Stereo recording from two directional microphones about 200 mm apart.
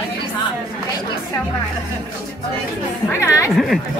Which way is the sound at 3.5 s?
Centre (ahead or behind).